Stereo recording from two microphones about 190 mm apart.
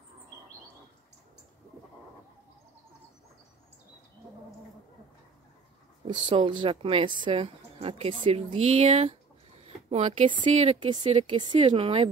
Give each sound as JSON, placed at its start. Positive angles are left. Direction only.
{"t": 6.0, "sound": "speech", "side_deg": -25}